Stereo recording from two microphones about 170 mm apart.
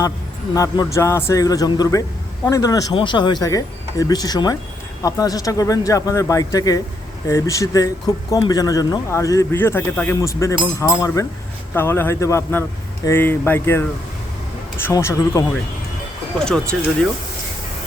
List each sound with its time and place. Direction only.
0.5 s speech: 20° left (ahead or behind)
16.4 s speech: 5° left (ahead or behind)